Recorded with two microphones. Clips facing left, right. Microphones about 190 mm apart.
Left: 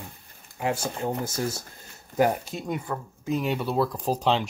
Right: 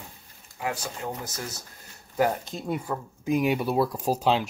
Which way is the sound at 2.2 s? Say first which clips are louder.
Left 2 dB; 15° left (ahead or behind).